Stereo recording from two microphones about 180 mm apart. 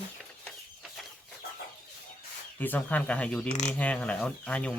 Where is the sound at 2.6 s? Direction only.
10° left (ahead or behind).